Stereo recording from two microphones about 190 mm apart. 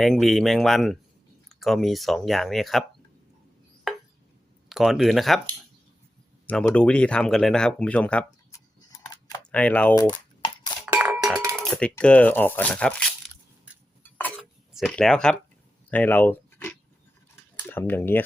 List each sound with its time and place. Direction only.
0.0 s speech: centre (ahead or behind)
3.9 s a sound: centre (ahead or behind)
4.7 s speech: centre (ahead or behind)
6.5 s speech: 5° left (ahead or behind)
9.5 s speech: 5° left (ahead or behind)
9.9 s a sound: 20° left (ahead or behind)
10.8 s cowbell: 10° right (ahead or behind)
11.7 s speech: 5° left (ahead or behind)
14.0 s a sound: 10° left (ahead or behind)
14.7 s speech: centre (ahead or behind)